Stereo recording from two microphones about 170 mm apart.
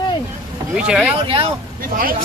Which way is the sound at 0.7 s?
5° right (ahead or behind).